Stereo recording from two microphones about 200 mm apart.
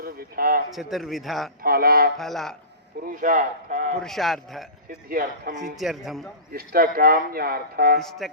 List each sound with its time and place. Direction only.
0.0 s a sound: 45° right (ahead or behind)
0.7 s a man's voice: centre (ahead or behind)
1.6 s speech: 50° right (ahead or behind)
2.1 s a man's voice: centre (ahead or behind)
3.0 s speech: 40° right (ahead or behind)
4.0 s a man's voice: centre (ahead or behind)
5.0 s speech: 45° right (ahead or behind)
5.7 s a man's voice: centre (ahead or behind)
6.5 s speech: 50° right (ahead or behind)